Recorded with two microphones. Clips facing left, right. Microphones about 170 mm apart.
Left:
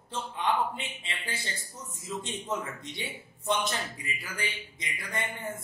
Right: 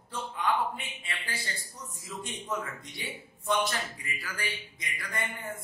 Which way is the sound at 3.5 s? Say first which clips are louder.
Right 1 dB; 20° left (ahead or behind).